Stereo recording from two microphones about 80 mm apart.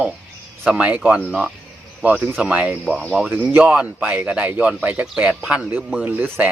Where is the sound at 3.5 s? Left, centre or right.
Centre.